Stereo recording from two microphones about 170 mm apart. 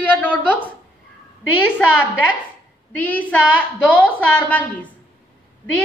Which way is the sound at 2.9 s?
10° left (ahead or behind).